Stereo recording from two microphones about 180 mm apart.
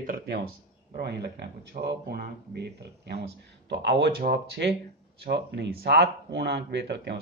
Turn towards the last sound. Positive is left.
turn(degrees=-70)  # may be behind; listen again after turning